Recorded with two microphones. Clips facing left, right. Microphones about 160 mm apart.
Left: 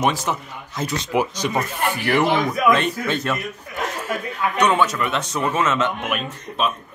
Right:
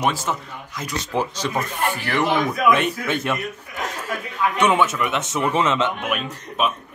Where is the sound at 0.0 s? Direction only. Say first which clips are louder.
Left 1 dB; 5° right (ahead or behind).